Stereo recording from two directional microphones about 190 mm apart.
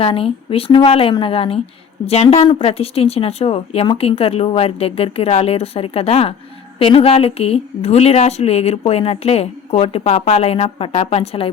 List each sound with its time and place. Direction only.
0.0 s a woman's voice: 30° left (ahead or behind)